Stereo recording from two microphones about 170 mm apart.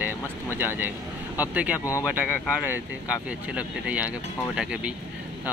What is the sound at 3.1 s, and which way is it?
Speech, 5° right (ahead or behind).